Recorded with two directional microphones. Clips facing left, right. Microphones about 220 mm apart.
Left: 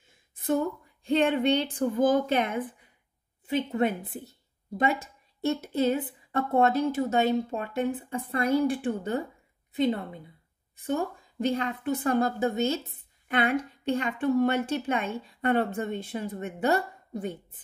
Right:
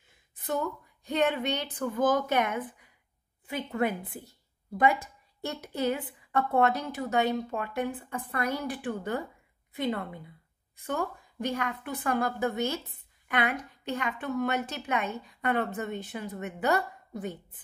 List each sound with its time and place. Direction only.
0.5 s a woman's voice: 30° left (ahead or behind)